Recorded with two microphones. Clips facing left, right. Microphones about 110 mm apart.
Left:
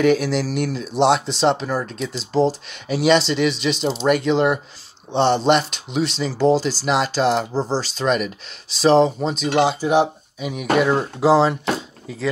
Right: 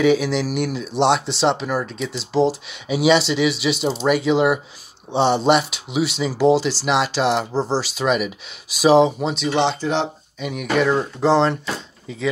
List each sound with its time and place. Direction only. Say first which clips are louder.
0.0 s speech: even; centre (ahead or behind)